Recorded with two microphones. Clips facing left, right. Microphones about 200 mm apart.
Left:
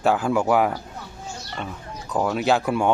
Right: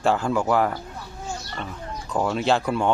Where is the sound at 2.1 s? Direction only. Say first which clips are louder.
Left 1 dB; 5° left (ahead or behind).